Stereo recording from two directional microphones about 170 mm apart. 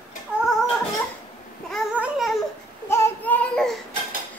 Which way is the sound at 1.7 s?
5° right (ahead or behind).